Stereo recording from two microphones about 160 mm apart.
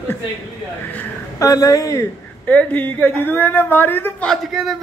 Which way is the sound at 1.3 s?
20° left (ahead or behind).